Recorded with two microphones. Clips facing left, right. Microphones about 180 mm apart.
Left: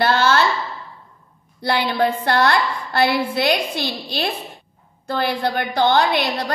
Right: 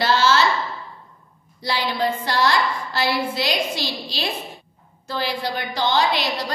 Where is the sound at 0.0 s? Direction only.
55° left (ahead or behind).